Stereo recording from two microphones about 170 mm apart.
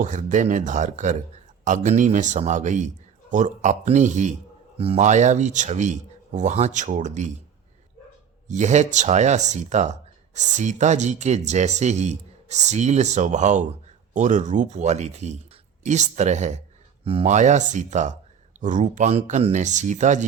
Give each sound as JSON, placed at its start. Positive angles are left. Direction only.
{"t": 0.0, "sound": "speech", "side_deg": -50}
{"t": 8.4, "sound": "speech", "side_deg": -45}